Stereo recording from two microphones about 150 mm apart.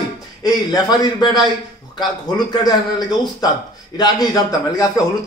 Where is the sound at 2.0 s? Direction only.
30° left (ahead or behind).